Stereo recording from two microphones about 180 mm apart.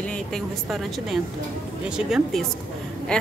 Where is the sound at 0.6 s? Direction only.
Centre (ahead or behind).